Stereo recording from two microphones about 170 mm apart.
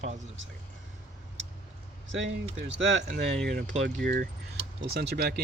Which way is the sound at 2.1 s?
90° right.